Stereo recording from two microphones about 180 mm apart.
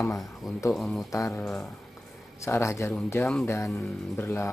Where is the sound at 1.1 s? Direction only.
15° left (ahead or behind).